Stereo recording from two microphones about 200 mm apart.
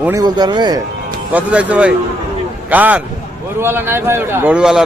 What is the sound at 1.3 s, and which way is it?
A man's voice, 5° right (ahead or behind).